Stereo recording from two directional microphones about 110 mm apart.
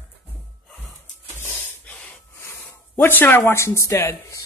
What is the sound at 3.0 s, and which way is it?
Speech, 20° left (ahead or behind).